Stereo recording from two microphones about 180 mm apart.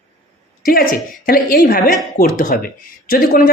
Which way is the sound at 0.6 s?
55° left (ahead or behind).